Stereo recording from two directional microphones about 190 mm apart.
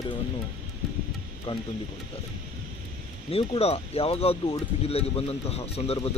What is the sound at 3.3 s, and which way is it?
Speech, 30° left (ahead or behind).